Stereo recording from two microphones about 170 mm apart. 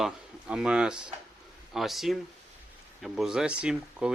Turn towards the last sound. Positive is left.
turn(degrees=-5)  # may be behind; listen again after turning